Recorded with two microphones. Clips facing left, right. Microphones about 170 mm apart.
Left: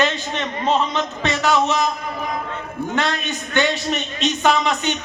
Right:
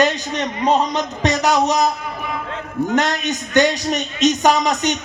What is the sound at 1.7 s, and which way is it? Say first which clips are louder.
Speech: right 3 dB; 40° right (ahead or behind).